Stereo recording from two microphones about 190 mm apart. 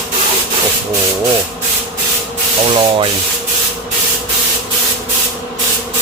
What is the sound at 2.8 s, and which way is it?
Speech, 30° right (ahead or behind).